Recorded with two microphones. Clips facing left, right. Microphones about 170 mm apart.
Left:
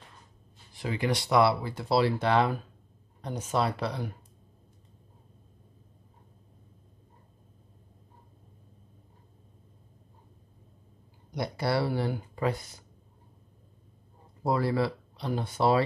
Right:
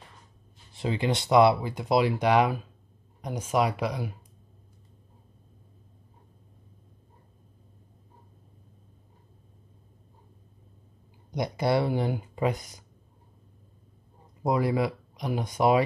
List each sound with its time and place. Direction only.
0.7 s speech: 25° right (ahead or behind)
11.3 s speech: 20° right (ahead or behind)
14.4 s speech: 15° right (ahead or behind)